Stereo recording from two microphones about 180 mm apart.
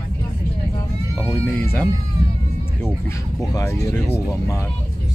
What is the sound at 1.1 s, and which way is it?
Speech, 10° left (ahead or behind).